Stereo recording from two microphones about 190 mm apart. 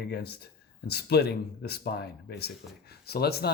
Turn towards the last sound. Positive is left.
turn(degrees=55)  # may be behind; listen again after turning